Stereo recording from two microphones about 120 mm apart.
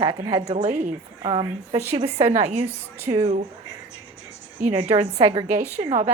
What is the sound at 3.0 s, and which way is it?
Speech, 25° right (ahead or behind).